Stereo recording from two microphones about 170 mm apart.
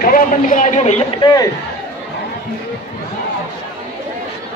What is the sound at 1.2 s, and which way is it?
Speech, 25° left (ahead or behind).